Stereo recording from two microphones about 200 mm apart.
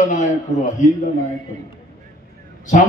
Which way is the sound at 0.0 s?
40° left (ahead or behind).